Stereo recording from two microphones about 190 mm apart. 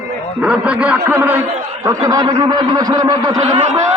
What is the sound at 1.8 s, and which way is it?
Speech, 20° right (ahead or behind).